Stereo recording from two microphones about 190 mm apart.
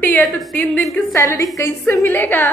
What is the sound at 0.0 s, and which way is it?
Speech, 5° left (ahead or behind).